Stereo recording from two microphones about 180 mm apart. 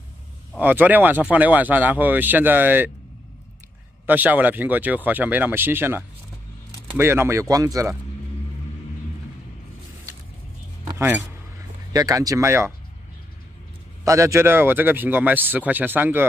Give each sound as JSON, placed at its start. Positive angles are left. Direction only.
{"t": 0.6, "sound": "speech", "side_deg": -10}
{"t": 4.0, "sound": "speech", "side_deg": -10}
{"t": 10.9, "sound": "speech", "side_deg": -10}
{"t": 14.0, "sound": "speech", "side_deg": -15}